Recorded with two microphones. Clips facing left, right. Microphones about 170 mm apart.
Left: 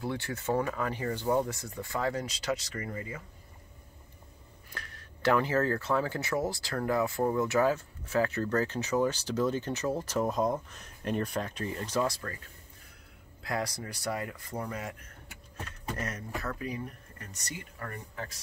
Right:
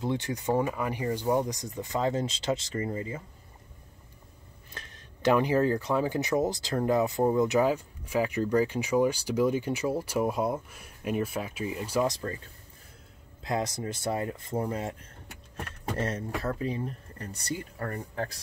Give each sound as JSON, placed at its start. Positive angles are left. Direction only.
{"t": 0.0, "sound": "speech", "side_deg": -20}
{"t": 4.7, "sound": "speech", "side_deg": -20}
{"t": 13.4, "sound": "speech", "side_deg": -20}